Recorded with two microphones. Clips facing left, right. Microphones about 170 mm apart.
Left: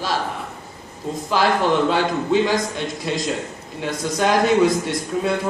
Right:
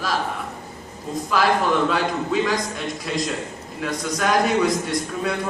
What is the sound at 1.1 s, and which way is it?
A man's voice, 30° left (ahead or behind).